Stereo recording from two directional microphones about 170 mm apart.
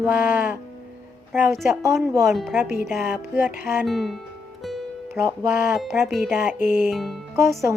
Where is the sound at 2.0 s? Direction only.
15° right (ahead or behind).